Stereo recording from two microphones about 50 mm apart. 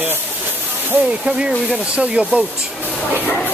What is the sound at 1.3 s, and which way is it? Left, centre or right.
Speech, right.